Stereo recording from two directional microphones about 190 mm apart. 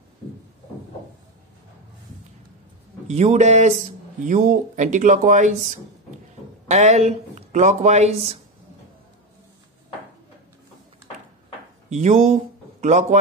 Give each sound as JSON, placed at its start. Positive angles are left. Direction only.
{"t": 3.1, "sound": "speech", "side_deg": -35}
{"t": 6.7, "sound": "speech", "side_deg": -35}
{"t": 11.9, "sound": "speech", "side_deg": -40}